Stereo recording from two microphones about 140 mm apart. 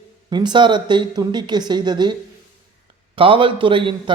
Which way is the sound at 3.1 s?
40° right (ahead or behind).